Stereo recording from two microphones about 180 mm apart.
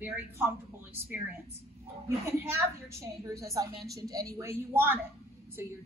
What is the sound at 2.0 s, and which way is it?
A woman's voice, 15° right (ahead or behind).